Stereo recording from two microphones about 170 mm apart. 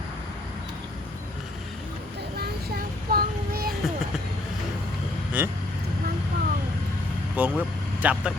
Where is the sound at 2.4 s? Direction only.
65° right (ahead or behind).